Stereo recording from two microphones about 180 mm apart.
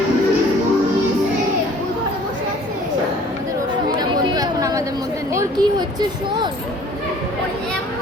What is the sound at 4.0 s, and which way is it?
Chatter, 20° right (ahead or behind).